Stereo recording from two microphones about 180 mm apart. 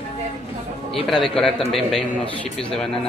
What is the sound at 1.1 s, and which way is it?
Speech, 5° left (ahead or behind).